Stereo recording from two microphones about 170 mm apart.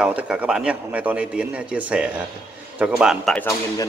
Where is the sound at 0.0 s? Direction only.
5° right (ahead or behind).